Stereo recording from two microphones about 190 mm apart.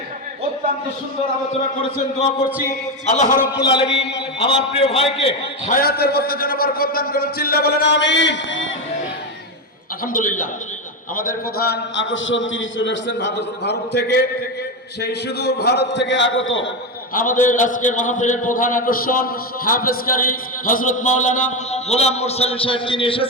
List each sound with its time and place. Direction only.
3.1 s a man's voice: 40° left (ahead or behind)
4.4 s a man's voice: 25° left (ahead or behind)
5.2 s a man's voice: 40° left (ahead or behind); by 8.7 s 75° left (ahead or behind)
10.0 s a man's voice: 45° left (ahead or behind); by 16.6 s 90° left
17.4 s a man's voice: 45° left (ahead or behind); by 23.2 s 25° left (ahead or behind)